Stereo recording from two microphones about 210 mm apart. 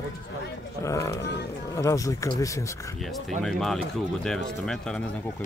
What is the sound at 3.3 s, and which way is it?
Speech, centre (ahead or behind).